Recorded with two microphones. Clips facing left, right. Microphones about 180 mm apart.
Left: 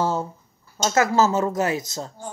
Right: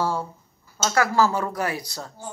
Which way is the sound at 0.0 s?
25° left (ahead or behind).